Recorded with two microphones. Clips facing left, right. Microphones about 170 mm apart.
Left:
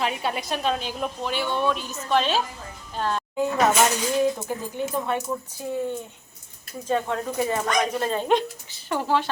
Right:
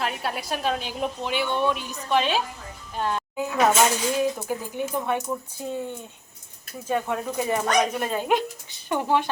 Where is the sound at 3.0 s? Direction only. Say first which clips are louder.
Even; 15° right (ahead or behind).